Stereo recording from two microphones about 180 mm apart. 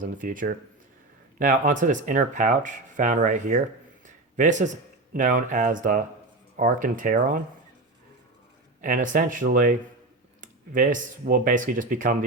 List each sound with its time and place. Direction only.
0.0 s speech: 45° right (ahead or behind)
8.8 s speech: 50° right (ahead or behind)